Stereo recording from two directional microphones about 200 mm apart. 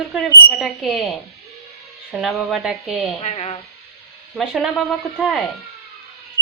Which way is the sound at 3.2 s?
30° left (ahead or behind).